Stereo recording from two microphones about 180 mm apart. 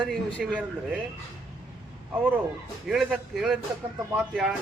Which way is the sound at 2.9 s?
Centre (ahead or behind).